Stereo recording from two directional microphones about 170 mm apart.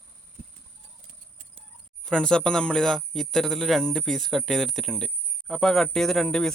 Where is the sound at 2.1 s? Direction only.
5° left (ahead or behind).